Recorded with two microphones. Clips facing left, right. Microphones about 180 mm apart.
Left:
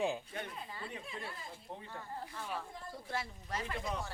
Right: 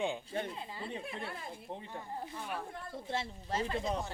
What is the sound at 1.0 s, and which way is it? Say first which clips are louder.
Speech: right 4 dB; 60° right (ahead or behind).